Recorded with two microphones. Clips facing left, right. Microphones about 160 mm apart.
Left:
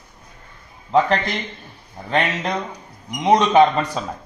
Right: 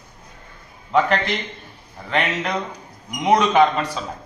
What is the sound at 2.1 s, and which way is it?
Speech, 30° left (ahead or behind).